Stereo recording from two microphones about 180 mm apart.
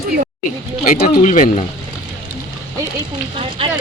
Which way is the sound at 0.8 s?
50° left (ahead or behind).